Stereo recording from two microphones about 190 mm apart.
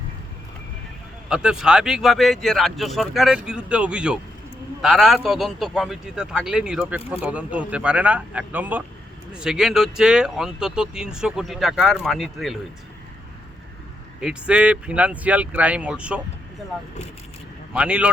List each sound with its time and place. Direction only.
1.3 s speech: 5° right (ahead or behind)
14.2 s speech: 5° right (ahead or behind)
17.7 s speech: 5° right (ahead or behind)